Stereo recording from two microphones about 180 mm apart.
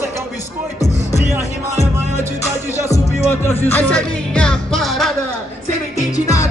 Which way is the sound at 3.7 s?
5° left (ahead or behind).